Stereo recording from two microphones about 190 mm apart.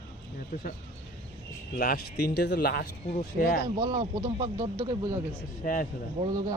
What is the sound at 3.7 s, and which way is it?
Speech, 20° right (ahead or behind).